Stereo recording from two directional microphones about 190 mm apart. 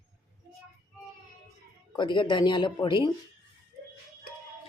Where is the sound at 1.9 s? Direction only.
25° left (ahead or behind).